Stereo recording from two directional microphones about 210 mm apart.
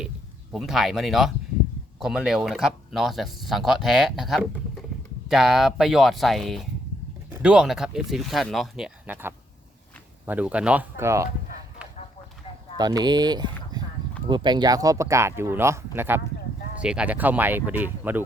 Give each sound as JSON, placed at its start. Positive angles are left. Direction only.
{"t": 0.5, "sound": "speech", "side_deg": 0}
{"t": 12.7, "sound": "speech", "side_deg": -20}
{"t": 13.7, "sound": "a sound", "side_deg": -20}
{"t": 14.3, "sound": "speech", "side_deg": -20}